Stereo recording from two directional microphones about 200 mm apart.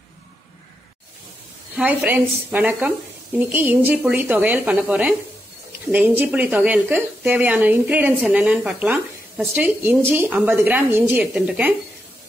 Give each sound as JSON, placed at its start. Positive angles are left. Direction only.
{"t": 1.8, "sound": "speech", "side_deg": -5}